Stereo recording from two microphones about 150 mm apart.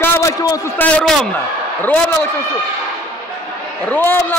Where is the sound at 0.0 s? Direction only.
20° left (ahead or behind).